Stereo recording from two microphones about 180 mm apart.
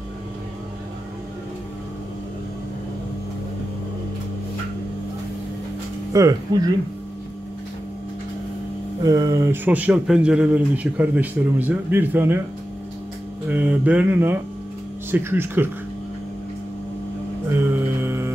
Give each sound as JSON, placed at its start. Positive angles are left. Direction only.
{"t": 6.1, "sound": "speech", "side_deg": -20}
{"t": 9.0, "sound": "speech", "side_deg": -20}
{"t": 13.5, "sound": "speech", "side_deg": -10}
{"t": 18.0, "sound": "music", "side_deg": -15}